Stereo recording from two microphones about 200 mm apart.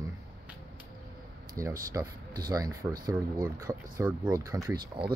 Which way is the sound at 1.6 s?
15° right (ahead or behind).